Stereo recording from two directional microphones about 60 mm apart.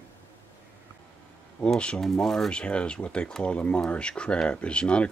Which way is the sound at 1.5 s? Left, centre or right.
Centre.